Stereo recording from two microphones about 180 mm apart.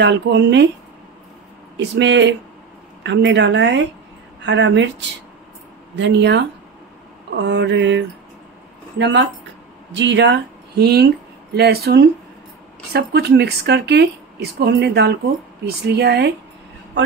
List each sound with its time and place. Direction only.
0.0 s a woman's voice: 75° right (ahead or behind)
1.8 s speech: 80° right
5.9 s a woman's voice: 75° right (ahead or behind)